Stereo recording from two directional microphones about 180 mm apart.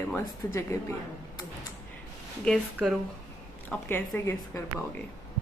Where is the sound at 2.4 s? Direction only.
Centre (ahead or behind).